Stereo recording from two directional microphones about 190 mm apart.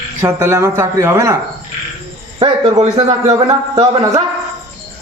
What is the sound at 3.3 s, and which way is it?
Speech, 20° right (ahead or behind).